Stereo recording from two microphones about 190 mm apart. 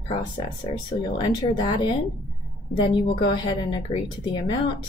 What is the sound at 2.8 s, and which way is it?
A woman's voice, 25° left (ahead or behind).